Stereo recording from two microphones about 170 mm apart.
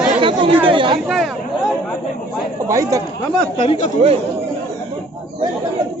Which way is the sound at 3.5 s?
40° left (ahead or behind).